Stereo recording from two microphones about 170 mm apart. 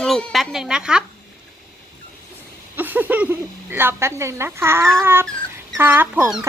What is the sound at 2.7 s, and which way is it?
A woman's voice, 10° right (ahead or behind).